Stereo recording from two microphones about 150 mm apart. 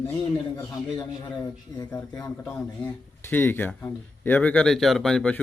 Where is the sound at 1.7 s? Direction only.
20° left (ahead or behind).